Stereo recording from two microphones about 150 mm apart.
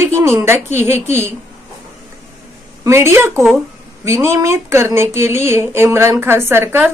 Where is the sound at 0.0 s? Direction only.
15° right (ahead or behind).